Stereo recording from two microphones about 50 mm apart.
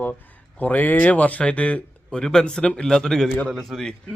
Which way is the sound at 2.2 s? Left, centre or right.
Centre.